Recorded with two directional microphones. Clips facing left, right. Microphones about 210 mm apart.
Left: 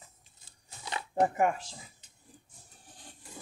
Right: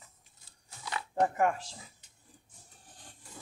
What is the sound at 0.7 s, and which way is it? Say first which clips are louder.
Dog: even; 25° left (ahead or behind).